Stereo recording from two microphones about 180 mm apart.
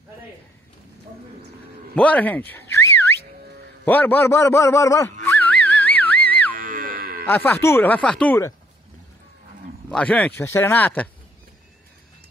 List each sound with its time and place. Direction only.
2.0 s a man's voice: 10° left (ahead or behind)
5.2 s music: 10° left (ahead or behind)
6.5 s cattle: 50° right (ahead or behind)
7.2 s a man's voice: 10° left (ahead or behind)
9.8 s a man's voice: 5° left (ahead or behind)